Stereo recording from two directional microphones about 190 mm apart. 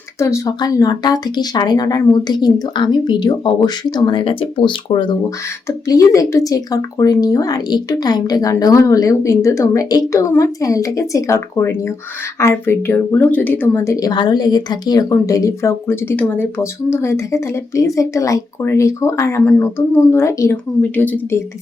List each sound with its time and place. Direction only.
0.2 s speech: 15° left (ahead or behind)